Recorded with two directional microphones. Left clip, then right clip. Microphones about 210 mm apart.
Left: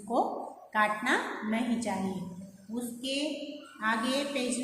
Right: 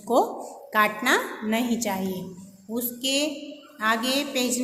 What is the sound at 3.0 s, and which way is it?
A woman's voice, 50° right (ahead or behind).